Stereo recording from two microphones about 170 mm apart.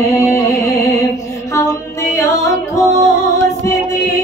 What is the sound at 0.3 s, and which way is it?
Music, 20° left (ahead or behind).